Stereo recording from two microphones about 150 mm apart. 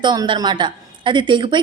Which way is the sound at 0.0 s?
30° right (ahead or behind).